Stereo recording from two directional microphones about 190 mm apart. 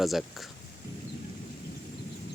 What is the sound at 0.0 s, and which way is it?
Speech, centre (ahead or behind).